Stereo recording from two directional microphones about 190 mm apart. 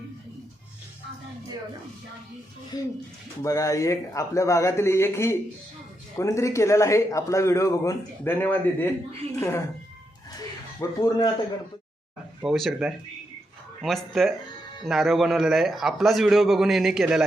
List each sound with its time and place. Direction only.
2.7 s a man's voice: 20° left (ahead or behind)
10.8 s speech: 20° left (ahead or behind)
12.4 s a man's voice: centre (ahead or behind)